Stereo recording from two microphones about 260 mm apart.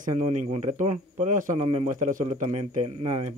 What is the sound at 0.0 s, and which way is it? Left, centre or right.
Speech, right.